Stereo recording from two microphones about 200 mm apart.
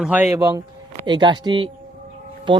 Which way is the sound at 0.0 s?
10° right (ahead or behind).